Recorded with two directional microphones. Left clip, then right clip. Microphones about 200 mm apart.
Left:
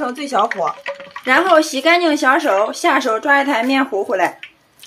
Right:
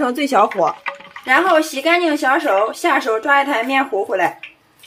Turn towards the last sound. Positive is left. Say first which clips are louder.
# left 1 dB
turn(degrees=15)  # may be behind; listen again after turning